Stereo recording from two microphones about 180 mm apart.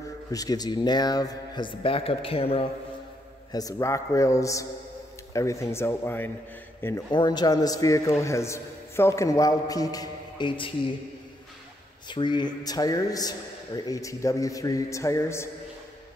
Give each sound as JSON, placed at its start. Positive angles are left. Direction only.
{"t": 0.3, "sound": "a man's voice", "side_deg": 20}
{"t": 3.5, "sound": "a man's voice", "side_deg": 20}
{"t": 7.1, "sound": "a man's voice", "side_deg": 25}
{"t": 12.1, "sound": "a man's voice", "side_deg": 25}